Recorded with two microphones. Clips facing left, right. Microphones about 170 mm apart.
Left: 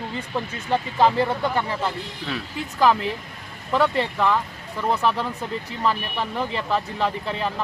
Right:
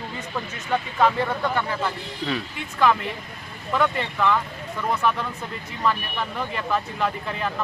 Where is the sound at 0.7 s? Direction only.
30° left (ahead or behind).